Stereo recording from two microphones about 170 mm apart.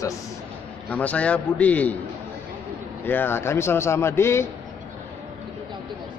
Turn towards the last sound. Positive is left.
turn(degrees=15)  # may be behind; listen again after turning